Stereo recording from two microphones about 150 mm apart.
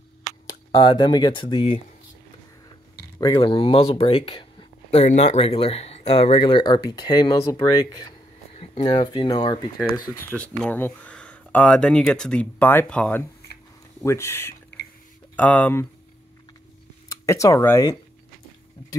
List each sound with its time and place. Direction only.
0.7 s speech: 30° left (ahead or behind)
3.3 s speech: 35° left (ahead or behind)
5.0 s speech: 50° left (ahead or behind); by 8.1 s 25° left (ahead or behind)
8.5 s a sound: 35° left (ahead or behind)
9.0 s speech: 30° left (ahead or behind)
10.3 s speech: 10° left (ahead or behind)
14.0 s speech: 20° left (ahead or behind)
17.1 s speech: 20° left (ahead or behind)